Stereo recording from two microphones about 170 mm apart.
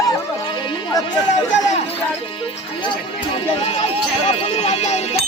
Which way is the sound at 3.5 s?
35° left (ahead or behind).